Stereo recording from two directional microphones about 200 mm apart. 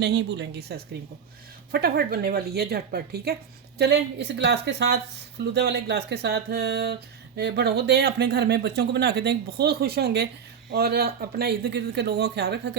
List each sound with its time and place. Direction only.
0.0 s speech: 60° right (ahead or behind)